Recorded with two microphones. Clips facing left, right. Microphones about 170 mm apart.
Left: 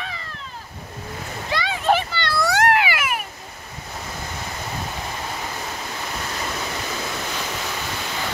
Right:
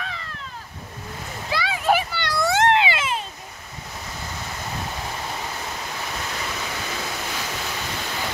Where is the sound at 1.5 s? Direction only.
5° right (ahead or behind).